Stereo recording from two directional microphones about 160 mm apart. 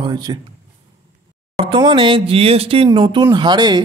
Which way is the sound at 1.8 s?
30° right (ahead or behind).